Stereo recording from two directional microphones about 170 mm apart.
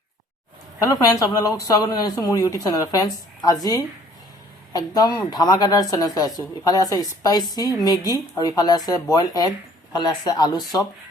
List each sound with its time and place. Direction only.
0.9 s speech: 20° left (ahead or behind)